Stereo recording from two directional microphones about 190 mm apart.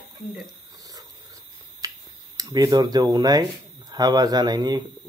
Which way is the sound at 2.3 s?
20° right (ahead or behind).